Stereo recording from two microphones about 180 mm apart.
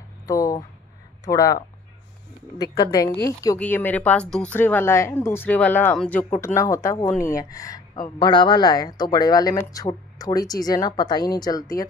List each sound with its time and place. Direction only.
0.3 s speech: 20° left (ahead or behind)
2.6 s speech: 20° left (ahead or behind)